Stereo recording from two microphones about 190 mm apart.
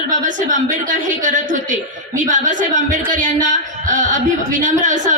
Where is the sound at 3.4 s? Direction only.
45° right (ahead or behind).